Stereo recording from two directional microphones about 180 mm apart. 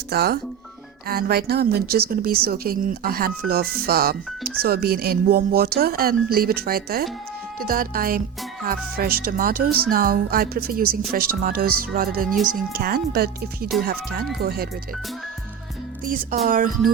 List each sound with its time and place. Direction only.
0.1 s a woman's voice: 65° right (ahead or behind)
16.0 s speech: 50° right (ahead or behind)